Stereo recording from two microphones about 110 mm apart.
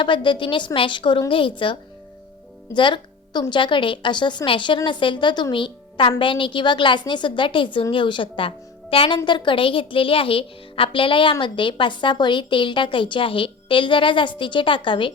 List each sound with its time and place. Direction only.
0.0 s a woman's voice: 50° left (ahead or behind)
2.7 s music: 45° left (ahead or behind)
3.5 s a woman's voice: 50° left (ahead or behind)